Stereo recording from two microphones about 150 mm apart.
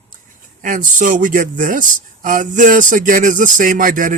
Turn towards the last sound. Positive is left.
turn(degrees=-60)  # may be behind; listen again after turning